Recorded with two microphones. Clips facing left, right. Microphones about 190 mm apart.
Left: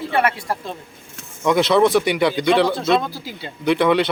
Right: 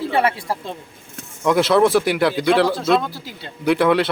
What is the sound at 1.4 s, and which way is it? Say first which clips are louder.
Speech: even; 5° right (ahead or behind).